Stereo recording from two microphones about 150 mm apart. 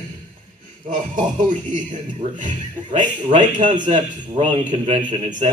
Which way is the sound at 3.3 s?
55° right (ahead or behind).